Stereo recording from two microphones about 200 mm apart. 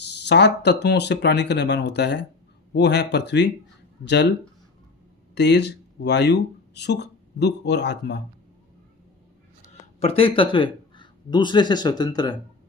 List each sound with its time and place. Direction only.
0.1 s speech: 60° left (ahead or behind)
10.0 s a man's voice: 30° left (ahead or behind)